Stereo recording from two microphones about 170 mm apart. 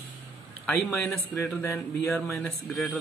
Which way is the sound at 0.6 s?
5° left (ahead or behind).